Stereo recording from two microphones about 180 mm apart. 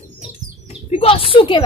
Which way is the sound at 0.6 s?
30° left (ahead or behind).